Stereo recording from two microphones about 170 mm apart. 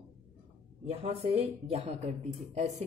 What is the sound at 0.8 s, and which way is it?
A woman's voice, 35° right (ahead or behind).